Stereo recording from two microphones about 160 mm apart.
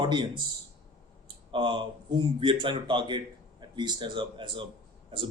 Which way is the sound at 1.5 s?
30° right (ahead or behind).